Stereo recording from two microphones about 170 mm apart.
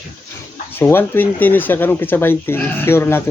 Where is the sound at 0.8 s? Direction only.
10° left (ahead or behind).